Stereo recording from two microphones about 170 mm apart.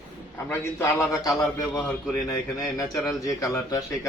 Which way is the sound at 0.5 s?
15° left (ahead or behind).